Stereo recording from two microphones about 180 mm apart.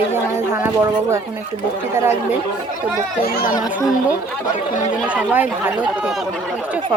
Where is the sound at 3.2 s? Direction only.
55° left (ahead or behind).